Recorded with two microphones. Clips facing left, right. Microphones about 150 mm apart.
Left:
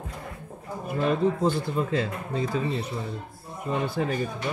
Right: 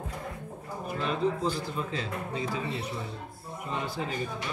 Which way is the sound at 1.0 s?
50° left (ahead or behind).